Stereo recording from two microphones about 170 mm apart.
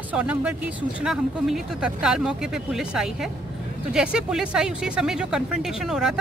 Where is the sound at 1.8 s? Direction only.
5° right (ahead or behind).